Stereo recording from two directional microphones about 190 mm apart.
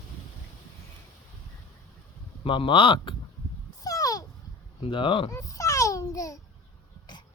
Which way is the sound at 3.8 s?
20° left (ahead or behind).